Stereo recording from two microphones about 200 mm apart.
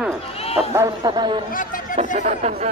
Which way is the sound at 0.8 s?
20° right (ahead or behind).